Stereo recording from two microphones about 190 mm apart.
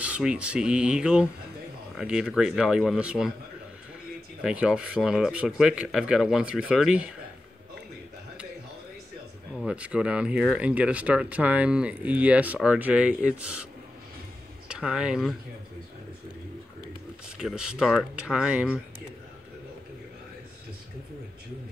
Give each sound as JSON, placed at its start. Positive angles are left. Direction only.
{"t": 0.0, "sound": "speech", "side_deg": -5}
{"t": 4.4, "sound": "speech", "side_deg": -5}
{"t": 9.6, "sound": "speech", "side_deg": -5}
{"t": 14.7, "sound": "speech", "side_deg": -5}
{"t": 17.4, "sound": "speech", "side_deg": -5}